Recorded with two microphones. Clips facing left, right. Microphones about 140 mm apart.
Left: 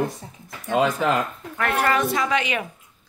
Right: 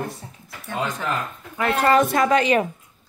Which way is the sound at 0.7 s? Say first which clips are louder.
Left 6 dB; 90° left.